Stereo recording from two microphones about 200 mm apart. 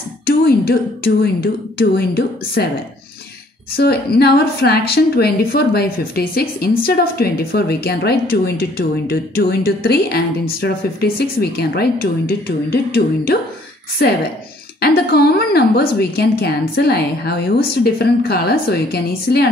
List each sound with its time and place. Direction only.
0.3 s a woman's voice: 50° left (ahead or behind)
3.7 s a woman's voice: 50° left (ahead or behind)
14.8 s a woman's voice: 55° left (ahead or behind)